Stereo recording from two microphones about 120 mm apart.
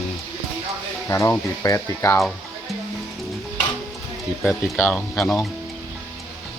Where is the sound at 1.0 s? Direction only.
25° left (ahead or behind).